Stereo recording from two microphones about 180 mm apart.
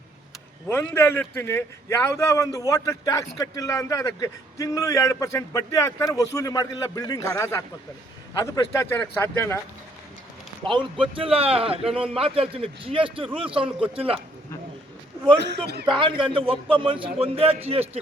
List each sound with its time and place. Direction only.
0.7 s a man's voice: 15° left (ahead or behind)
10.6 s a man's voice: 25° right (ahead or behind)
15.4 s speech: 70° right (ahead or behind)
15.9 s a man's voice: 30° right (ahead or behind)